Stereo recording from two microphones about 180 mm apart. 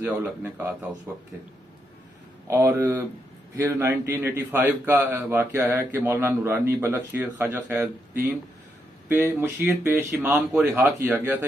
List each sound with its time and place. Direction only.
0.0 s a man's voice: 10° right (ahead or behind)
2.5 s a man's voice: 15° right (ahead or behind)